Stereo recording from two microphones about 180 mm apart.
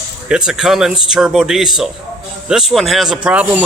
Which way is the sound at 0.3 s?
5° right (ahead or behind).